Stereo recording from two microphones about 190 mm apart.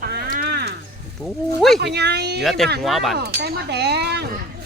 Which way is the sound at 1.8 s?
60° right (ahead or behind).